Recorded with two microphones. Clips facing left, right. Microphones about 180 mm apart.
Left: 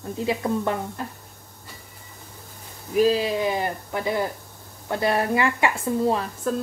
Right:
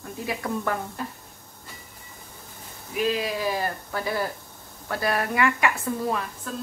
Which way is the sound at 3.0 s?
30° left (ahead or behind).